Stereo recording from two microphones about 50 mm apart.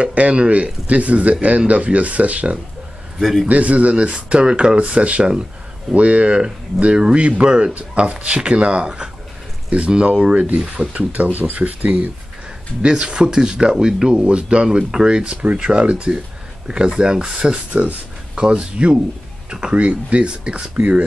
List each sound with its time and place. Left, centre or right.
0.0 s speech: right
3.2 s a man's voice: centre
3.4 s speech: right
17.4 s speech: right